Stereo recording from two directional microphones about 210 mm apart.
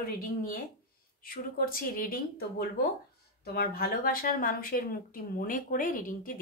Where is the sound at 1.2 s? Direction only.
45° left (ahead or behind).